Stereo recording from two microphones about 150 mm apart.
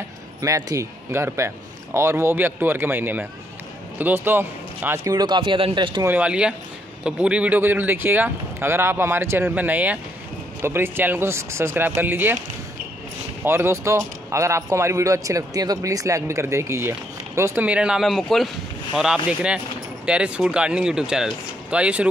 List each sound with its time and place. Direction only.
0.4 s speech: 20° right (ahead or behind)
6.0 s speech: 10° right (ahead or behind)
13.4 s speech: 15° right (ahead or behind)